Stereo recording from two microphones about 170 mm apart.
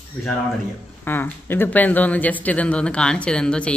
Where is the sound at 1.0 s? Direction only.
10° left (ahead or behind).